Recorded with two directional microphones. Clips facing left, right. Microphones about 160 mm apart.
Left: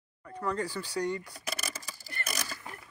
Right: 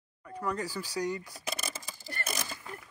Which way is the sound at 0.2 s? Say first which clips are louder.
Left 1 dB; 10° right (ahead or behind).